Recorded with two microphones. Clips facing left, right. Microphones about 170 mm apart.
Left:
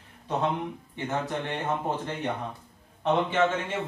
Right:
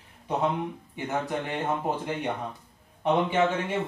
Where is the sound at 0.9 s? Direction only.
10° right (ahead or behind).